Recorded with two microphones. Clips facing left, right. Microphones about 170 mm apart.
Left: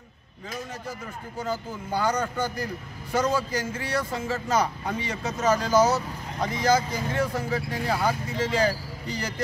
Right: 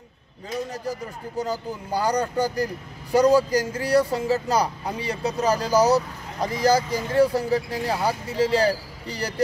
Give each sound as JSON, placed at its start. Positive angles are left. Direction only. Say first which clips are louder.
{"t": 1.4, "sound": "speech", "louder": "right 2 dB", "side_deg": -35}